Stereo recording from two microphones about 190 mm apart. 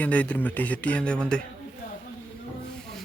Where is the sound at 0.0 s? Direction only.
10° left (ahead or behind).